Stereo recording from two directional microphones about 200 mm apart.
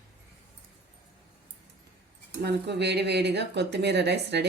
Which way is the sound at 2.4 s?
60° right (ahead or behind).